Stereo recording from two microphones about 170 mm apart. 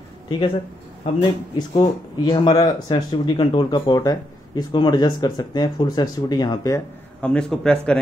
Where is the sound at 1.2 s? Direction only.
25° left (ahead or behind).